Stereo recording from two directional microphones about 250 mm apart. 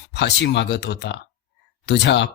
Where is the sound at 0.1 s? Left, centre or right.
Left.